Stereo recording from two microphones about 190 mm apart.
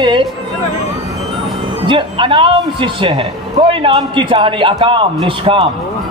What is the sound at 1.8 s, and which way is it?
A man's voice, 25° right (ahead or behind).